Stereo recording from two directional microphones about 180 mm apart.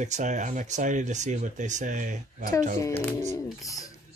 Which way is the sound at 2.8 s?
15° left (ahead or behind).